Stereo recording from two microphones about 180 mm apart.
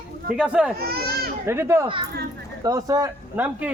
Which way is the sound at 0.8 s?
60° right (ahead or behind).